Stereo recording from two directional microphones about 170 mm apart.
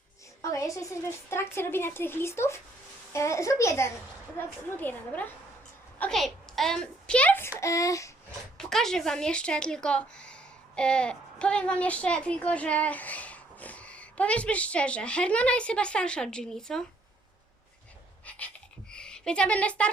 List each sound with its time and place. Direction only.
0.4 s a woman's voice: 20° left (ahead or behind)
8.5 s a woman's voice: 5° left (ahead or behind)
18.3 s a sound: 10° left (ahead or behind)